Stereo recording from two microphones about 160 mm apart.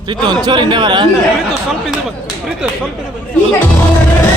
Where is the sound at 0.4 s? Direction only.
30° right (ahead or behind).